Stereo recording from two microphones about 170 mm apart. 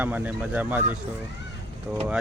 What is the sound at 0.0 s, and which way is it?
Speech, 10° right (ahead or behind).